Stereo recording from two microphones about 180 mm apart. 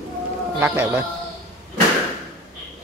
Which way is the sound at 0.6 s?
15° right (ahead or behind).